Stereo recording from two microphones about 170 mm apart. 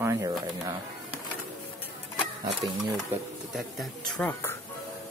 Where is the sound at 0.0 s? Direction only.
20° right (ahead or behind).